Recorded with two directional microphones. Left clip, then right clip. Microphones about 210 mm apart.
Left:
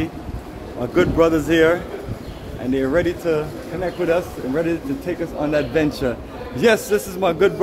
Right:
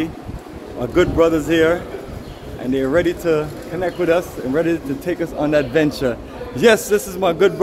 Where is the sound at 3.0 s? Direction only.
20° right (ahead or behind).